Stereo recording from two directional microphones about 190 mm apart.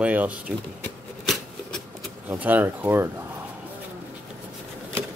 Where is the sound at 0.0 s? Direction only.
10° right (ahead or behind).